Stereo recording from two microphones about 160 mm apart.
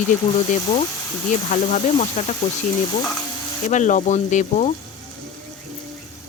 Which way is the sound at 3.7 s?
50° left (ahead or behind).